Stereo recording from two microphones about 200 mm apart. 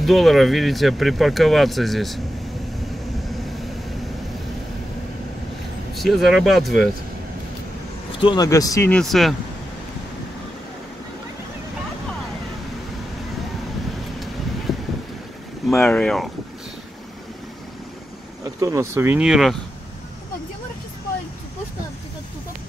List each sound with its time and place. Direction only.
0.0 s speech: centre (ahead or behind)
5.9 s speech: centre (ahead or behind)
8.2 s speech: 20° left (ahead or behind)
8.9 s speech: centre (ahead or behind)
14.7 s boat: centre (ahead or behind)
15.8 s speech: 5° left (ahead or behind)
18.4 s speech: 15° right (ahead or behind)